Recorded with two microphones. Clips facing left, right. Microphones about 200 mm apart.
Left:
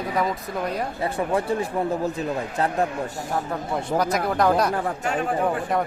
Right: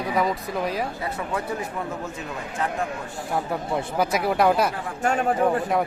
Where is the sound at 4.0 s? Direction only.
5° right (ahead or behind).